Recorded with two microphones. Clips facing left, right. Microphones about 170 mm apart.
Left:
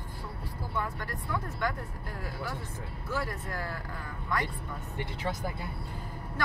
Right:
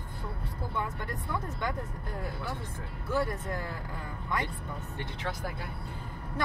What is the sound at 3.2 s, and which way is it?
Speech, 20° right (ahead or behind).